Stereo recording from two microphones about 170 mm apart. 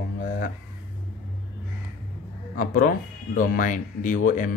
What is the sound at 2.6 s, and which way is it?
Speech, 55° left (ahead or behind).